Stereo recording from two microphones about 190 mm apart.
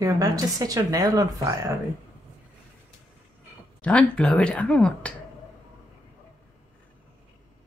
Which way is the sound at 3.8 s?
5° left (ahead or behind).